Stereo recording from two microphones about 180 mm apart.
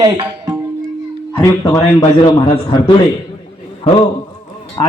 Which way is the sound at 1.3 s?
20° left (ahead or behind).